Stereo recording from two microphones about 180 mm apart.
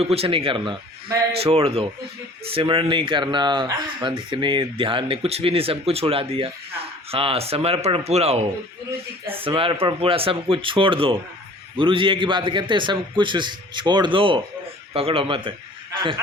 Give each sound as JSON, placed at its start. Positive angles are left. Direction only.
{"t": 0.0, "sound": "speech", "side_deg": -35}